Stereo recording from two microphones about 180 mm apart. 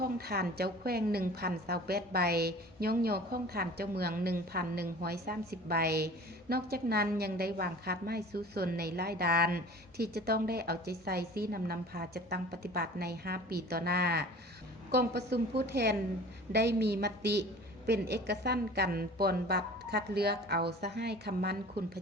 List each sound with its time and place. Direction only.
0.0 s a woman's voice: 60° right (ahead or behind)